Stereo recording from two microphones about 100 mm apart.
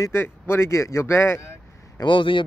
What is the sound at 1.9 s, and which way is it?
Speech, 55° left (ahead or behind).